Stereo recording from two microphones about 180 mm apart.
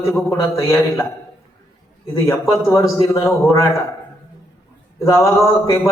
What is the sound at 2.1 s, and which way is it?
A man's voice, 15° left (ahead or behind).